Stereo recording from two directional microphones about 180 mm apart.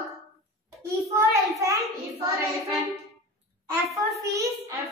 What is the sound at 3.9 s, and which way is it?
Speech, 15° right (ahead or behind).